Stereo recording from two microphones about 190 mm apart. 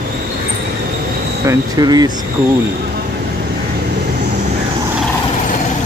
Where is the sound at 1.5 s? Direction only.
20° right (ahead or behind).